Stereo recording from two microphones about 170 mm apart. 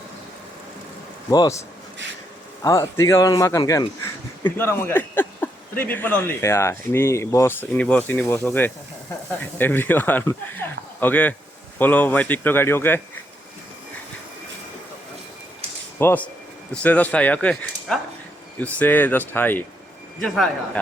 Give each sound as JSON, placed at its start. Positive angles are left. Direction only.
{"t": 1.3, "sound": "speech", "side_deg": 20}
{"t": 16.0, "sound": "speech", "side_deg": 10}